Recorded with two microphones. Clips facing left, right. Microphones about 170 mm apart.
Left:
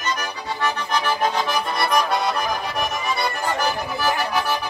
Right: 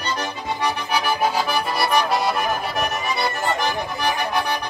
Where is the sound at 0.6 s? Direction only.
10° right (ahead or behind).